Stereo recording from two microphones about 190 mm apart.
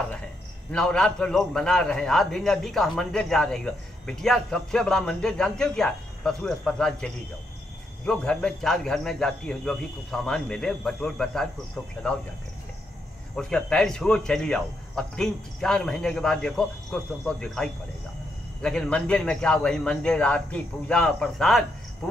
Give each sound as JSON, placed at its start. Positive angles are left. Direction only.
{"t": 0.7, "sound": "a man's voice", "side_deg": 5}
{"t": 13.4, "sound": "a man's voice", "side_deg": 5}